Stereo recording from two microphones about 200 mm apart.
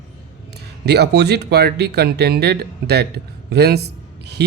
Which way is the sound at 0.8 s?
55° right (ahead or behind).